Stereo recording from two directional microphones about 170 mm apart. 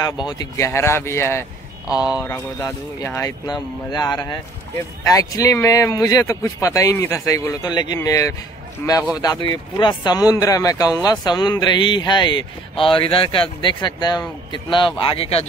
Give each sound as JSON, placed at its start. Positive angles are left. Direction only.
{"t": 0.0, "sound": "speech", "side_deg": 25}
{"t": 9.2, "sound": "speech", "side_deg": 25}